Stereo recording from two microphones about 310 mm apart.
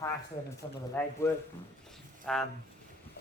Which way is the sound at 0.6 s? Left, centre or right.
Centre.